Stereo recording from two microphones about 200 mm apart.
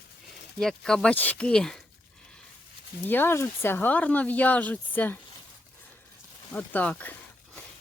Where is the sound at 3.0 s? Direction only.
10° left (ahead or behind).